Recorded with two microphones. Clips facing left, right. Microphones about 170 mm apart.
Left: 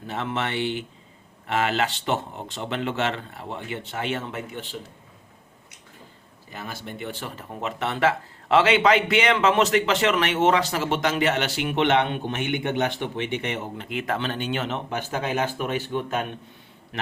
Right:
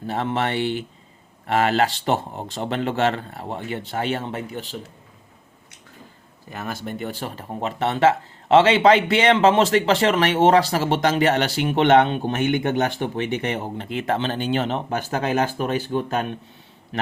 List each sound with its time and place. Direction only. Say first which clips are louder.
0.1 s speech: right 4 dB; 35° right (ahead or behind)
6.5 s speech: right 6 dB; 50° right (ahead or behind)